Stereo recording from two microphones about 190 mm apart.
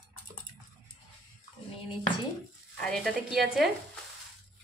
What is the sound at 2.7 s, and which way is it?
Speech, centre (ahead or behind).